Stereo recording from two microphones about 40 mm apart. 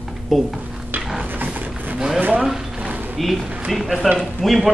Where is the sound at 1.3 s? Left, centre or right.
Right.